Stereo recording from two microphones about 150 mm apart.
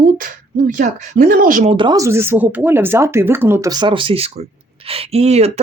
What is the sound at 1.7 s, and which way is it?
Speech, 30° right (ahead or behind).